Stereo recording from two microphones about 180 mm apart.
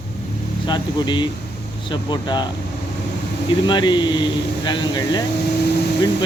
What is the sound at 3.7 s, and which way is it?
Speech, 25° left (ahead or behind).